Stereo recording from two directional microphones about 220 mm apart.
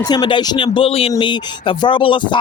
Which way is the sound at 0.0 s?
20° left (ahead or behind).